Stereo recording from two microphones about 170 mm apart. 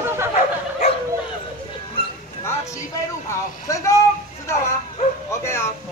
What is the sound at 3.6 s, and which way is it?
Speech, 20° left (ahead or behind).